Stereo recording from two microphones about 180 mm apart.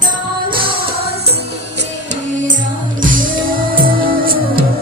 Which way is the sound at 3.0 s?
50° right (ahead or behind).